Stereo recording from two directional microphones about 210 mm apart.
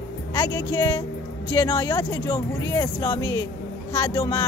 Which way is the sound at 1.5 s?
20° left (ahead or behind).